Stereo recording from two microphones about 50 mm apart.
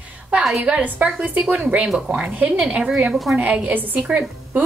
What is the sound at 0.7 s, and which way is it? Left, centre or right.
A woman's voice, centre.